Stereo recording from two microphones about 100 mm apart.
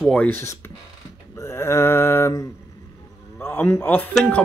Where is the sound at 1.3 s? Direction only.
30° left (ahead or behind).